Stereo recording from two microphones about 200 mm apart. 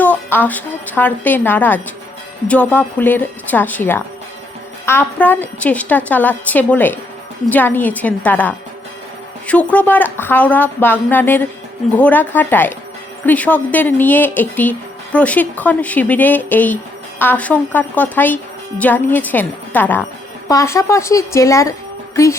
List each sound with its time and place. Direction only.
0.0 s speech: 10° left (ahead or behind)